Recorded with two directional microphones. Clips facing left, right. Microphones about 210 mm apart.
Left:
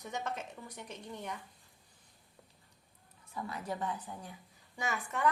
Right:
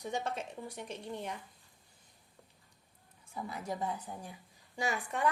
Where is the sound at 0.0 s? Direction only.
30° right (ahead or behind).